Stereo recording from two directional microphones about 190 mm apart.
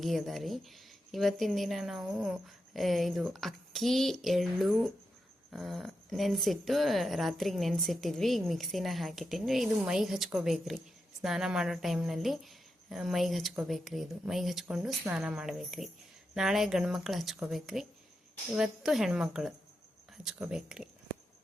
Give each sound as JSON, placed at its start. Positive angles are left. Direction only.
{"t": 0.0, "sound": "speech", "side_deg": 0}